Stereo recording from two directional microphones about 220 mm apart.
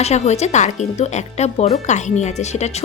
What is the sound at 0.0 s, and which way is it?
Speech, 30° left (ahead or behind).